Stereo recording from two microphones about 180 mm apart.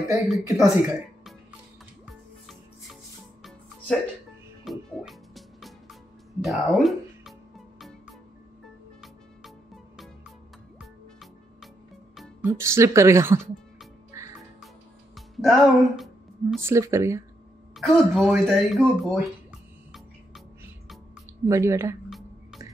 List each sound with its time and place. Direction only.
0.6 s speech: centre (ahead or behind)
2.0 s music: centre (ahead or behind)
12.4 s a woman's voice: 15° right (ahead or behind)
14.1 s music: 15° right (ahead or behind)
15.1 s music: centre (ahead or behind)
16.6 s a woman's voice: 15° right (ahead or behind)
17.7 s speech: centre (ahead or behind)
21.5 s a woman's voice: 15° right (ahead or behind)